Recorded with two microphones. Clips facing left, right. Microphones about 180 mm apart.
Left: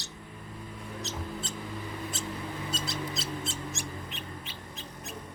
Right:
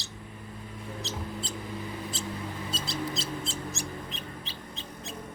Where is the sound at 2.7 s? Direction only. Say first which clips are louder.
Right 2 dB; 30° right (ahead or behind).